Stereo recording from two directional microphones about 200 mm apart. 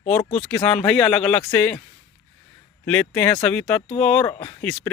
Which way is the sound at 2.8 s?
10° left (ahead or behind).